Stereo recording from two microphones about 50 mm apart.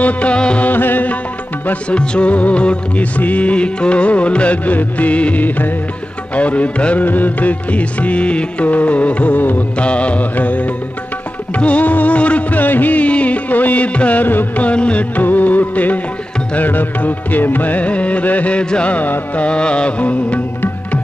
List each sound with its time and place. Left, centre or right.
0.0 s music: left
0.7 s music: left
1.7 s music: left
9.8 s music: left
14.6 s music: left
19.4 s music: left